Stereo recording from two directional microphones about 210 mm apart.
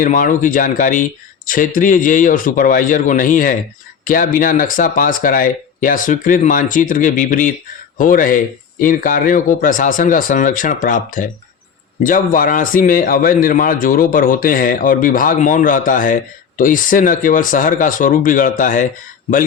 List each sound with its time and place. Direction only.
0.0 s speech: 40° left (ahead or behind)